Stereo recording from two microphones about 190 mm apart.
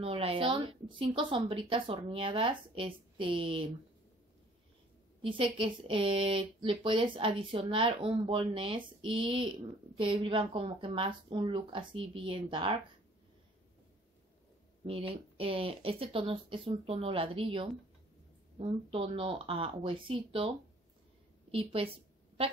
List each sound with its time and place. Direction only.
0.0 s speech: 30° right (ahead or behind)
5.2 s speech: 25° right (ahead or behind)
14.9 s a woman's voice: 30° right (ahead or behind)